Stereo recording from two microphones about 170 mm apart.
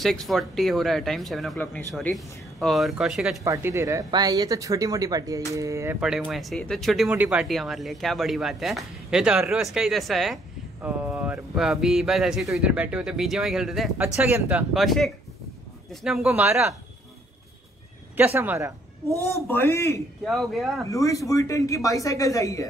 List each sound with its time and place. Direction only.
0.0 s speech: centre (ahead or behind)
3.4 s speech: 15° right (ahead or behind)
5.9 s speech: 5° right (ahead or behind)
18.1 s a woman's voice: 10° right (ahead or behind)
19.4 s a man's voice: 15° left (ahead or behind)
20.2 s speech: centre (ahead or behind)
20.8 s speech: 20° left (ahead or behind)